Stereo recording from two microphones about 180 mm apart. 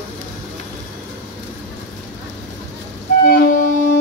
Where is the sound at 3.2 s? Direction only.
50° left (ahead or behind).